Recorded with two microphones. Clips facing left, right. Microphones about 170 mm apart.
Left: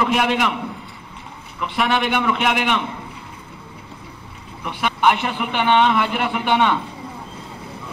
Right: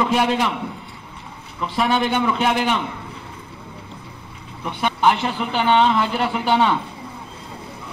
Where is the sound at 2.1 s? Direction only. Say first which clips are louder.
Right 1 dB; 30° right (ahead or behind).